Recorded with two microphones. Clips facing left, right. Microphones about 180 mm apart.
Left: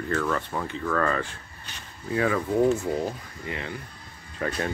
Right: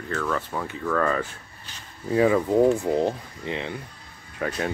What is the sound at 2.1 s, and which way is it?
Speech, 25° right (ahead or behind).